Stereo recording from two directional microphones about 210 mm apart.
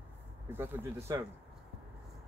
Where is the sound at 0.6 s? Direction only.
15° right (ahead or behind).